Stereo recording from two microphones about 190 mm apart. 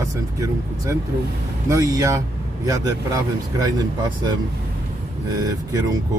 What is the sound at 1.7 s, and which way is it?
A man's voice, 15° right (ahead or behind).